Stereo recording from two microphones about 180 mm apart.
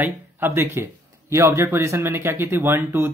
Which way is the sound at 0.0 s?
10° right (ahead or behind).